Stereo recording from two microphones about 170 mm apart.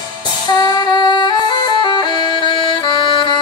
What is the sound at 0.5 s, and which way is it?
Music, 25° left (ahead or behind).